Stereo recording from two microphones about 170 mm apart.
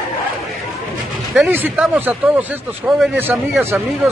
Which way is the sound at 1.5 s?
10° right (ahead or behind).